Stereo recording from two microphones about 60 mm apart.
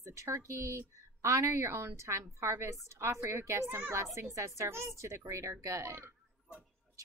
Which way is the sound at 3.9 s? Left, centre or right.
Right.